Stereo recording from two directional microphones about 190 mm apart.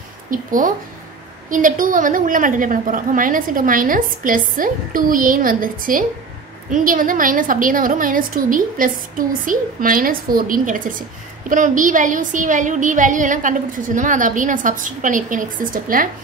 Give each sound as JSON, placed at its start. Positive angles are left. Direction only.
{"t": 0.3, "sound": "a woman's voice", "side_deg": -45}